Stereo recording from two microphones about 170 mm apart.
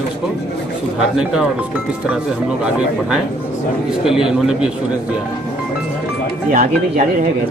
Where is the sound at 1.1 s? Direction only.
5° right (ahead or behind).